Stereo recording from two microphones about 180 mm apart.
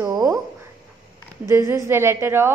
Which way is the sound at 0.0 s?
20° right (ahead or behind).